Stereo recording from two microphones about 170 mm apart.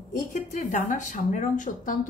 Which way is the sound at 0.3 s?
45° left (ahead or behind).